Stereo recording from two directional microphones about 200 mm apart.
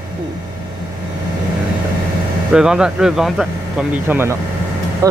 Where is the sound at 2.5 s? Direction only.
5° right (ahead or behind).